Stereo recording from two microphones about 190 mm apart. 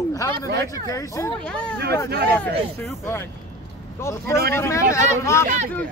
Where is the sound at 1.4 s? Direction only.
5° left (ahead or behind).